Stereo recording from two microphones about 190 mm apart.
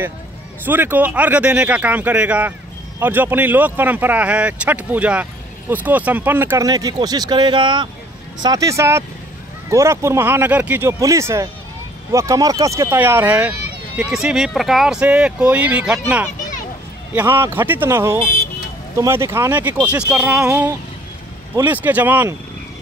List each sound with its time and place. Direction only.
0.7 s speech: 10° right (ahead or behind)